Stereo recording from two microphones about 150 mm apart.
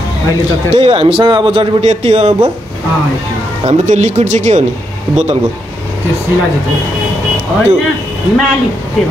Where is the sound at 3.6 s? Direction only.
50° right (ahead or behind).